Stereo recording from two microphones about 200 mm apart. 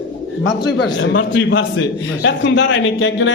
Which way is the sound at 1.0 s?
70° left (ahead or behind).